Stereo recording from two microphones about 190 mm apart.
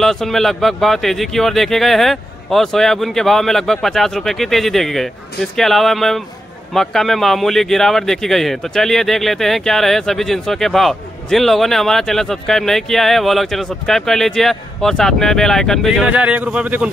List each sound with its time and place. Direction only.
0.0 s a man's voice: centre (ahead or behind)